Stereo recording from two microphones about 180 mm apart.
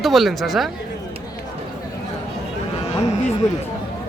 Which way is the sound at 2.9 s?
35° left (ahead or behind).